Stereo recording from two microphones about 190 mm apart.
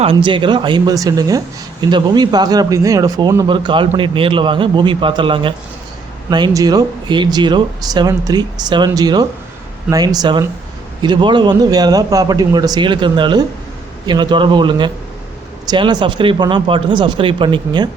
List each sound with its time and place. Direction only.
0.0 s speech: 30° right (ahead or behind)